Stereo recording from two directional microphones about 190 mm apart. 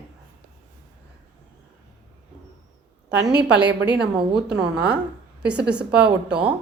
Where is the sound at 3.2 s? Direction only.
60° right (ahead or behind).